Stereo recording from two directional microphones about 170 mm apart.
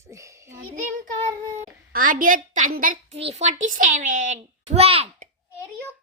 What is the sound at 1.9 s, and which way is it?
A child's voice, 55° right (ahead or behind).